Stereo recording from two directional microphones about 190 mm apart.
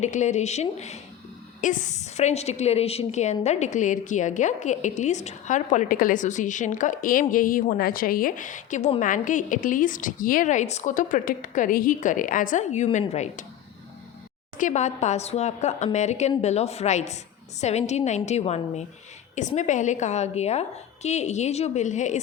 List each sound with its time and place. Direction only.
0.0 s a woman's voice: 40° left (ahead or behind)
14.6 s a woman's voice: 40° left (ahead or behind)